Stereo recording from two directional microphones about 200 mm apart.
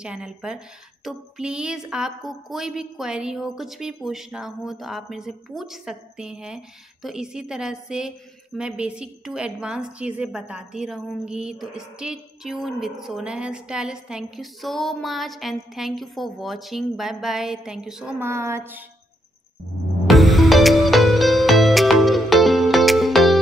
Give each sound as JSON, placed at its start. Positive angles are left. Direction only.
{"t": 0.0, "sound": "a woman's voice", "side_deg": -5}
{"t": 20.1, "sound": "music", "side_deg": 0}